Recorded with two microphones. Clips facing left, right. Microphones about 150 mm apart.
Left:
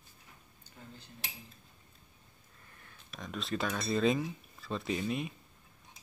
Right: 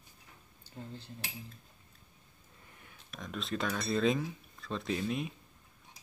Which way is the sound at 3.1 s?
Centre (ahead or behind).